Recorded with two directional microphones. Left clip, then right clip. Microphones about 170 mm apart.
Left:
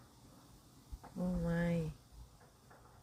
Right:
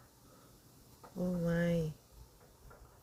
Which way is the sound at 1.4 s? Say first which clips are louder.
Right 5 dB; 40° right (ahead or behind).